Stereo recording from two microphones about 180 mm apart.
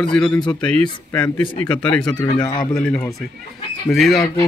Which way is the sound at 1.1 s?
10° left (ahead or behind).